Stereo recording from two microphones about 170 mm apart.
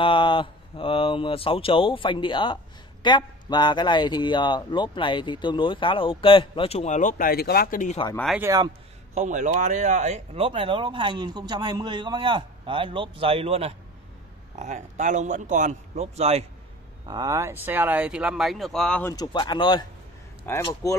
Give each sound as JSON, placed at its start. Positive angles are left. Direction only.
{"t": 0.0, "sound": "speech", "side_deg": 30}
{"t": 8.4, "sound": "speech", "side_deg": -20}
{"t": 9.1, "sound": "a man's voice", "side_deg": -45}
{"t": 17.1, "sound": "speech", "side_deg": -20}
{"t": 19.1, "sound": "speech", "side_deg": 25}
{"t": 20.5, "sound": "speech", "side_deg": 15}